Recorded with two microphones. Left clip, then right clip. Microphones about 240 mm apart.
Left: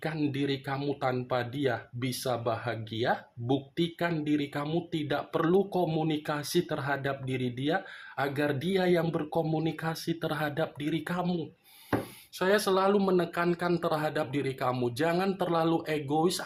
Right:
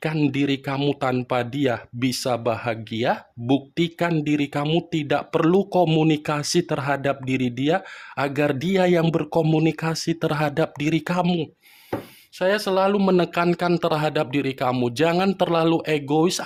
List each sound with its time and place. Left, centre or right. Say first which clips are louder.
0.0 s speech: right 8 dB; right